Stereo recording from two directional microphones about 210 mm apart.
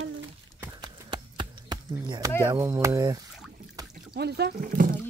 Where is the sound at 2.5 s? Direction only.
15° right (ahead or behind).